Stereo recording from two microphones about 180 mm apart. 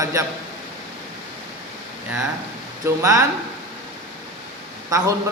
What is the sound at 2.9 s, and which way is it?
Speech, 15° right (ahead or behind).